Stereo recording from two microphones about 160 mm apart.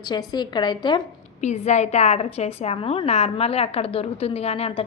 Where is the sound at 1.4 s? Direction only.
45° left (ahead or behind).